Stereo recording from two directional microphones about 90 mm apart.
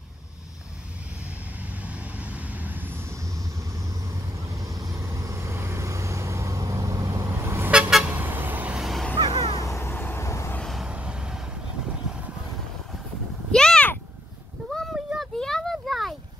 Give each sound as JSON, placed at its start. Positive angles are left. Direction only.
{"t": 1.6, "sound": "vehicle", "side_deg": -15}
{"t": 8.7, "sound": "vehicle", "side_deg": 0}
{"t": 9.1, "sound": "vehicle", "side_deg": -50}
{"t": 9.5, "sound": "vehicle", "side_deg": 35}
{"t": 10.6, "sound": "vehicle", "side_deg": 0}
{"t": 10.9, "sound": "vehicle", "side_deg": -10}
{"t": 13.5, "sound": "meow", "side_deg": 10}
{"t": 14.7, "sound": "a sound", "side_deg": 5}